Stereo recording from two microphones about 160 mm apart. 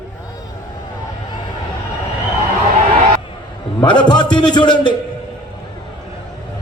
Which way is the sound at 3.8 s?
30° left (ahead or behind).